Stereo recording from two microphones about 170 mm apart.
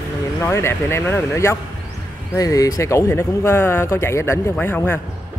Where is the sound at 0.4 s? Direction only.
15° left (ahead or behind).